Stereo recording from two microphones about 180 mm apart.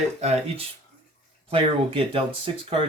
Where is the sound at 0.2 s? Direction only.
35° right (ahead or behind).